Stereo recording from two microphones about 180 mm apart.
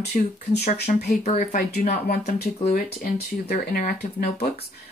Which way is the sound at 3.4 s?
50° left (ahead or behind).